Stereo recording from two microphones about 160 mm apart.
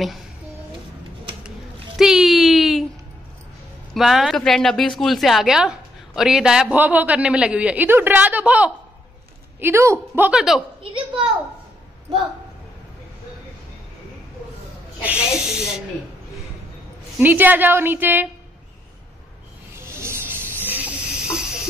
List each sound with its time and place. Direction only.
2.0 s a sound: centre (ahead or behind)
3.9 s a woman's voice: centre (ahead or behind)
10.8 s a woman's voice: 30° right (ahead or behind)
15.0 s a woman's voice: 10° right (ahead or behind)
17.2 s a woman's voice: 10° right (ahead or behind)
19.8 s hiss: 15° right (ahead or behind)